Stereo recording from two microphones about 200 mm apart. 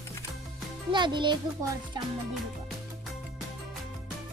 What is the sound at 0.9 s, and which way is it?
Speech, 25° right (ahead or behind).